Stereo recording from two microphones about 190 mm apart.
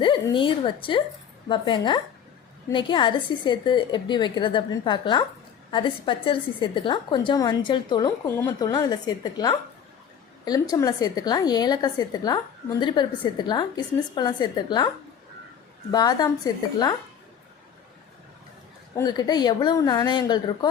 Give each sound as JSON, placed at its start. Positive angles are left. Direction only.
{"t": 0.0, "sound": "a woman's voice", "side_deg": 25}
{"t": 15.9, "sound": "a woman's voice", "side_deg": 20}
{"t": 18.9, "sound": "a woman's voice", "side_deg": 20}